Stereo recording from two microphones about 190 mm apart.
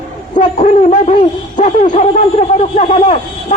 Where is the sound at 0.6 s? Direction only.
35° left (ahead or behind).